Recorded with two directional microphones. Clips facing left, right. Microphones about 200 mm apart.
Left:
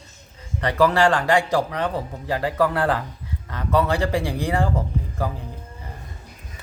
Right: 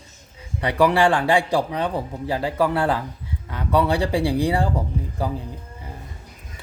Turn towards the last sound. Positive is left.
turn(degrees=-15)  # may be behind; listen again after turning